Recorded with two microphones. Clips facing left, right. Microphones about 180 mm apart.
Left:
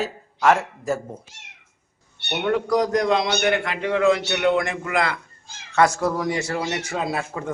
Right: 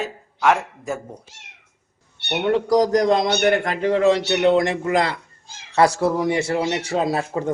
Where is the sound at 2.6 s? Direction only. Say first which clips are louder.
Right 4 dB; 35° right (ahead or behind).